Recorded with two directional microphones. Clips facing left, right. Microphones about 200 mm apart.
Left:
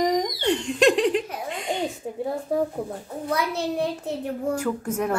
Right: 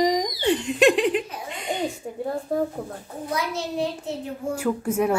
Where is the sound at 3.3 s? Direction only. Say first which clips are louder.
Left 2 dB; 60° left (ahead or behind).